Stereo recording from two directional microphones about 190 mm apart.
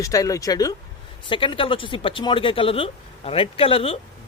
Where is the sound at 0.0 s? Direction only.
15° left (ahead or behind).